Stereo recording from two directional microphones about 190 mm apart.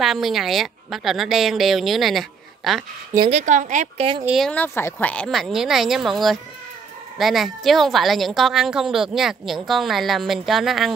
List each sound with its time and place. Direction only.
0.0 s a woman's voice: centre (ahead or behind)
3.3 s speech: 40° right (ahead or behind)
4.2 s a woman's voice: 5° right (ahead or behind)
4.5 s a woman's voice: 10° left (ahead or behind)